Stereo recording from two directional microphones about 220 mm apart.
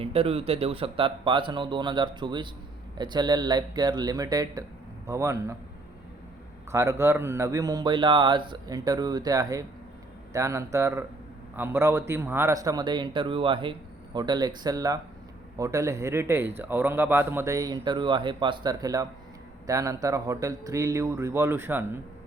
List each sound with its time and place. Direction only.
0.0 s speech: 25° right (ahead or behind)
6.7 s speech: 10° right (ahead or behind)